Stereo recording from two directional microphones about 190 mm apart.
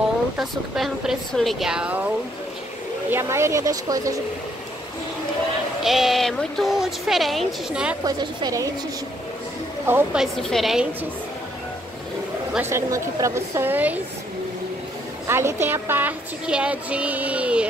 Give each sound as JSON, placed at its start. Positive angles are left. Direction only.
{"t": 0.4, "sound": "speech", "side_deg": 0}
{"t": 3.1, "sound": "speech", "side_deg": -15}
{"t": 5.8, "sound": "speech", "side_deg": 0}
{"t": 8.0, "sound": "a woman's voice", "side_deg": -20}
{"t": 9.8, "sound": "speech", "side_deg": -10}
{"t": 10.2, "sound": "speech", "side_deg": 0}
{"t": 12.5, "sound": "speech", "side_deg": -15}
{"t": 15.2, "sound": "speech", "side_deg": -15}